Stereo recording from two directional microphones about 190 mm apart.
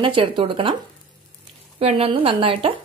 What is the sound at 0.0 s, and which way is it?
Speech, 25° right (ahead or behind).